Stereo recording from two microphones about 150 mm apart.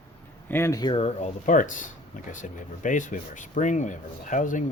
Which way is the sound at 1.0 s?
55° left (ahead or behind).